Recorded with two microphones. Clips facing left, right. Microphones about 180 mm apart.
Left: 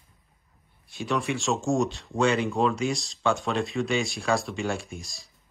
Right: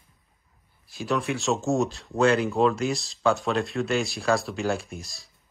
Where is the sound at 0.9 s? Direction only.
Centre (ahead or behind).